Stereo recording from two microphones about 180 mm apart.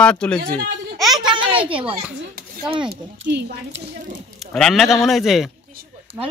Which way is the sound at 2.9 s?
70° right (ahead or behind).